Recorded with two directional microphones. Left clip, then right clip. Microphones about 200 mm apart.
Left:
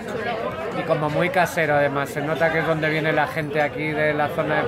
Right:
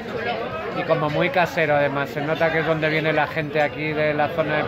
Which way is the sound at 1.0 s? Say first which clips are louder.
Even; 5° right (ahead or behind).